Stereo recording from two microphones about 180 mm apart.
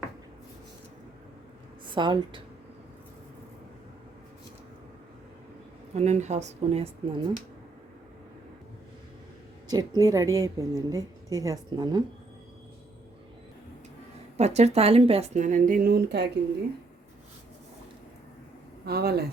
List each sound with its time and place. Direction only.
1.9 s a woman's voice: 25° right (ahead or behind)
5.9 s a woman's voice: 40° right (ahead or behind)
9.6 s a woman's voice: 20° right (ahead or behind)
14.3 s a woman's voice: 35° right (ahead or behind); by 16.3 s 70° right (ahead or behind)
18.9 s speech: 60° right (ahead or behind)